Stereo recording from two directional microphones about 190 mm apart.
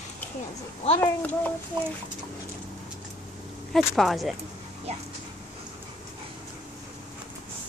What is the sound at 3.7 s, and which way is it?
Speech, centre (ahead or behind).